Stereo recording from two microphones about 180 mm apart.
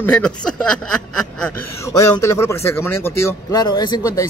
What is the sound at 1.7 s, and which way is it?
Speech, 15° left (ahead or behind).